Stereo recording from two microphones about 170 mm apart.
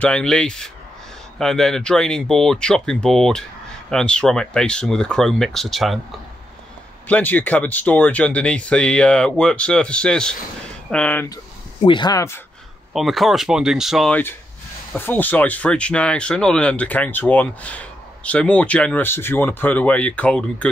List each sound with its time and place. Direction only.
0.0 s speech: 5° left (ahead or behind)
7.1 s speech: 10° left (ahead or behind)
11.8 s speech: 25° left (ahead or behind)
12.9 s speech: centre (ahead or behind)